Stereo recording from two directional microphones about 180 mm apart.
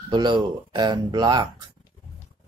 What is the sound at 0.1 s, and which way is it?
Speech, 25° right (ahead or behind).